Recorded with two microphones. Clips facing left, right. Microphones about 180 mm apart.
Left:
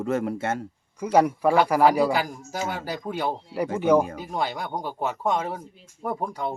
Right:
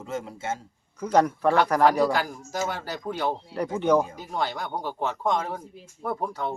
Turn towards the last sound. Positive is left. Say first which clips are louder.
# left 1 dB
turn(degrees=10)  # may be behind; listen again after turning